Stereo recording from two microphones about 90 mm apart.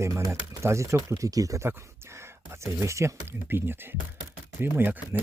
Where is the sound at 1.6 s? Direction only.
30° right (ahead or behind).